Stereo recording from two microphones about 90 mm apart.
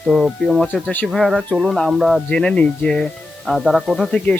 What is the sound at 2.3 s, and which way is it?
Speech, 10° left (ahead or behind).